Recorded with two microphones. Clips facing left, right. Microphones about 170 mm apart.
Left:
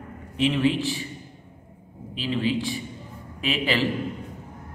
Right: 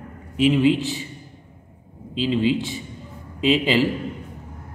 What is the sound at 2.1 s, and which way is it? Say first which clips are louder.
A man's voice: right 5 dB; 20° right (ahead or behind).